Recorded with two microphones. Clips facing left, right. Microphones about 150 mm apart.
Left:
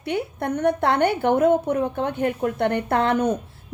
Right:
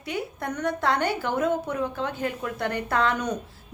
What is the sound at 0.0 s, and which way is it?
A woman's voice, 60° left (ahead or behind).